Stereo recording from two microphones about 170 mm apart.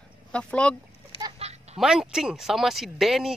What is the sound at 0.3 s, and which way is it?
Speech, 5° left (ahead or behind).